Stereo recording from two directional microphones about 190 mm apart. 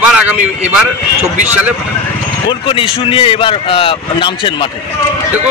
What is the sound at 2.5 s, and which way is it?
A man's voice, 25° left (ahead or behind).